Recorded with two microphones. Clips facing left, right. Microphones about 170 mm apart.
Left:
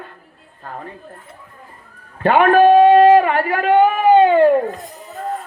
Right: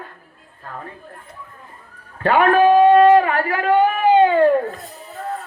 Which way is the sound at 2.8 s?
25° left (ahead or behind).